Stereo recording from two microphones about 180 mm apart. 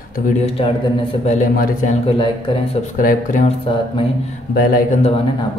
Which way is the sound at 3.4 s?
30° left (ahead or behind).